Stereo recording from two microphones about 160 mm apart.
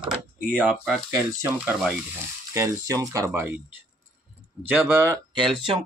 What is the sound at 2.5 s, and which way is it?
Speech, 20° right (ahead or behind).